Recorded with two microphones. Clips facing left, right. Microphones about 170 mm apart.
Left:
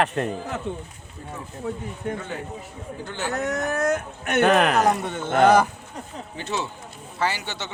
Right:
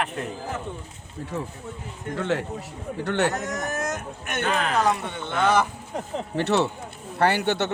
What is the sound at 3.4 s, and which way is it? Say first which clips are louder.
Speech: left 5 dB; 60° left (ahead or behind).